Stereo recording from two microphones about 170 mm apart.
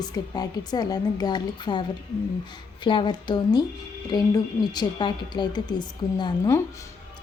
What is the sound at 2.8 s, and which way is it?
Speech, 30° left (ahead or behind).